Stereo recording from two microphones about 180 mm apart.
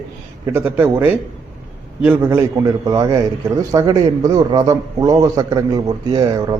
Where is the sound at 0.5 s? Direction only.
15° right (ahead or behind).